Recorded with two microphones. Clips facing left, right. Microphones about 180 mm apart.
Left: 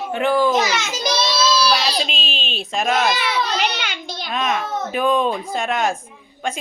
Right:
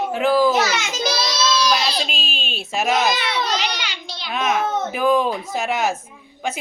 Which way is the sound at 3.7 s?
50° left (ahead or behind).